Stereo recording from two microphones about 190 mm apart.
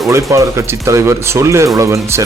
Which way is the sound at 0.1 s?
15° right (ahead or behind).